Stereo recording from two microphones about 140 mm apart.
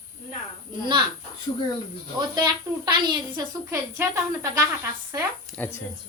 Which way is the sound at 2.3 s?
30° right (ahead or behind).